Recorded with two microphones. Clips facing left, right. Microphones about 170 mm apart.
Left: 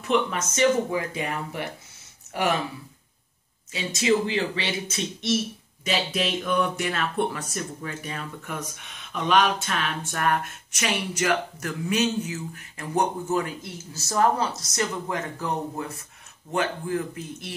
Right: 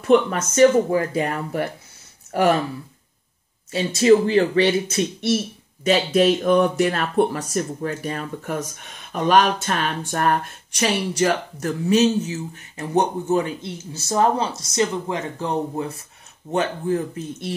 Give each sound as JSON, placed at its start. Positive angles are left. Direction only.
{"t": 0.0, "sound": "speech", "side_deg": -40}
{"t": 4.0, "sound": "speech", "side_deg": -45}
{"t": 5.9, "sound": "speech", "side_deg": -45}